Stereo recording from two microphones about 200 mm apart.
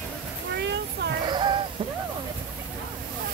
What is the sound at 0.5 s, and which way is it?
Speech, 60° right (ahead or behind).